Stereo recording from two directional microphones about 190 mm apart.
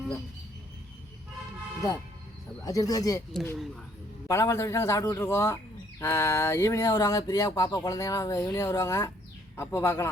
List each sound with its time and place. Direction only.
2.6 s speech: 20° left (ahead or behind)
3.4 s speech: 5° left (ahead or behind)